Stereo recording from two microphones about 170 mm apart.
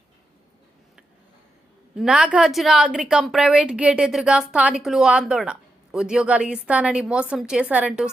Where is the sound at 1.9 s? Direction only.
5° right (ahead or behind).